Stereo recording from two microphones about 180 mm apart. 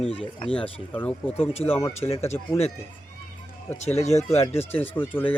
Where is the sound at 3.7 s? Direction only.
40° left (ahead or behind).